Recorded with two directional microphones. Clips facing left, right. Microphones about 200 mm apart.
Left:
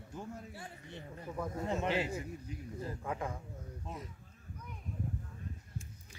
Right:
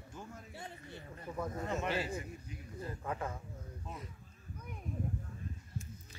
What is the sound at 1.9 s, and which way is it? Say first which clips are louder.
Speech: left 2 dB; 15° left (ahead or behind).